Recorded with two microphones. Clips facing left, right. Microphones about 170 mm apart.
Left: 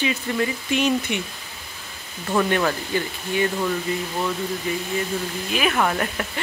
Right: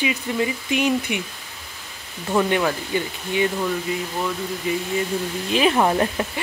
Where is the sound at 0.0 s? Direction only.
15° right (ahead or behind).